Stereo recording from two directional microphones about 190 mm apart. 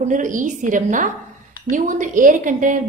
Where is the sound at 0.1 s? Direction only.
45° right (ahead or behind).